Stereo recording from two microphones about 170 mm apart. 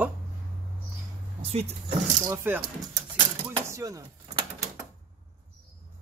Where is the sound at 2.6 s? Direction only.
30° right (ahead or behind).